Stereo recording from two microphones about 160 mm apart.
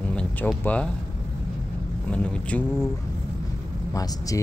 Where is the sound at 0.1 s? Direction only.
5° left (ahead or behind).